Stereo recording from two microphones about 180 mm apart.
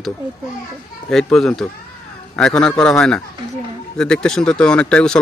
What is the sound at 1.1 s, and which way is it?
Speech, 5° left (ahead or behind).